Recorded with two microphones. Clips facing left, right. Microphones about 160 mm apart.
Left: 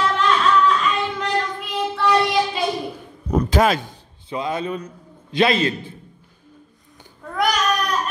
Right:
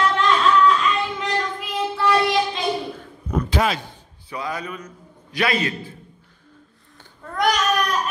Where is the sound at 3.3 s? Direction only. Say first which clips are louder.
Left 4 dB; 45° left (ahead or behind).